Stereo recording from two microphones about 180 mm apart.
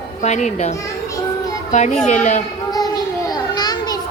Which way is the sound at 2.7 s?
20° left (ahead or behind).